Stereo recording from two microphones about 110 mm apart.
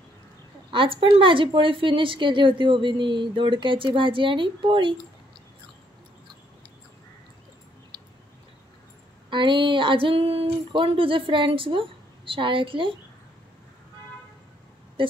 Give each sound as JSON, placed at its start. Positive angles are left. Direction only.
{"t": 0.7, "sound": "a woman's voice", "side_deg": -50}
{"t": 9.3, "sound": "a woman's voice", "side_deg": -45}
{"t": 15.0, "sound": "speech", "side_deg": -50}